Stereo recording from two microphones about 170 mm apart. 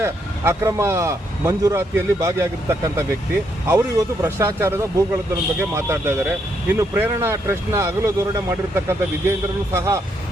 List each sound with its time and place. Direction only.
0.0 s speech: 15° right (ahead or behind)